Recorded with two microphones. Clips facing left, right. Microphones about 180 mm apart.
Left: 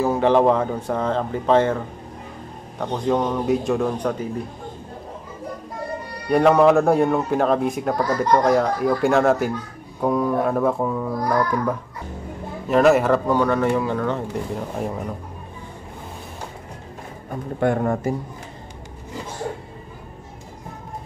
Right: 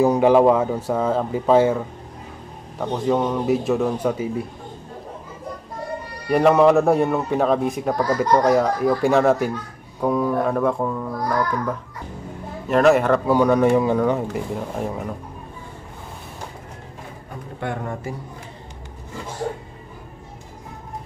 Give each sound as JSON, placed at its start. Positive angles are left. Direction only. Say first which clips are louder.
{"t": 0.0, "sound": "speech", "louder": "right 3 dB", "side_deg": -15}
{"t": 2.8, "sound": "a man's voice", "louder": "right 1 dB", "side_deg": -5}
{"t": 6.2, "sound": "a man's voice", "louder": "even", "side_deg": -5}
{"t": 12.6, "sound": "a man's voice", "louder": "even", "side_deg": 0}
{"t": 13.3, "sound": "speech", "louder": "right 3 dB", "side_deg": -15}
{"t": 14.3, "sound": "a man's voice", "louder": "even", "side_deg": 0}
{"t": 17.6, "sound": "speech", "louder": "left 8 dB", "side_deg": 45}